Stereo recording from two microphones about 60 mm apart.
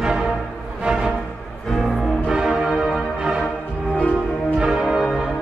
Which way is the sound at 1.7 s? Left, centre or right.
Centre.